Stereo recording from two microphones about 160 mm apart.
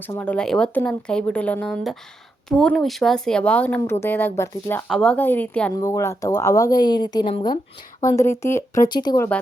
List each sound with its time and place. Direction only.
0.0 s speech: 10° left (ahead or behind)
5.7 s speech: 20° left (ahead or behind)